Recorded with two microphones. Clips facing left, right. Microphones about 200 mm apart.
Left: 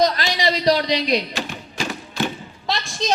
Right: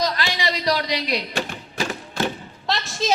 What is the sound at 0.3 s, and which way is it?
Speech, 30° left (ahead or behind).